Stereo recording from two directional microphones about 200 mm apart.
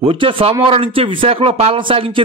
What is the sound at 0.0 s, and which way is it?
Speech, 25° right (ahead or behind).